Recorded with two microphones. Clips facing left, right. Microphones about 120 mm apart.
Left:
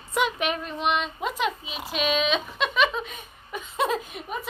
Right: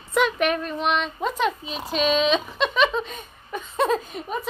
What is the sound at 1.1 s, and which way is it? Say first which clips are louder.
A woman's voice: right 3 dB; 5° left (ahead or behind).